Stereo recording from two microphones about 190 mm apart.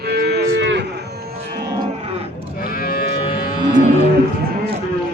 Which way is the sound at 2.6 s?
50° left (ahead or behind).